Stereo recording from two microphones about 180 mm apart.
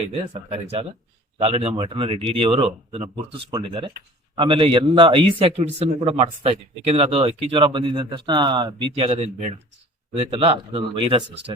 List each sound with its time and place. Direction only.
0.0 s a man's voice: 35° right (ahead or behind)